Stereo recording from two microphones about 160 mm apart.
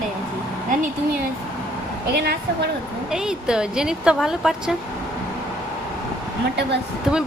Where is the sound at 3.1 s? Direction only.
5° right (ahead or behind).